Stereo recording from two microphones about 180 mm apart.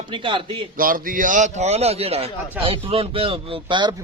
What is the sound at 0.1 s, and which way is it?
Speech, 25° right (ahead or behind).